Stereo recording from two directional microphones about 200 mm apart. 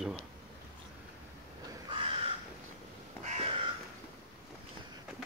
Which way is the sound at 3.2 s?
35° right (ahead or behind).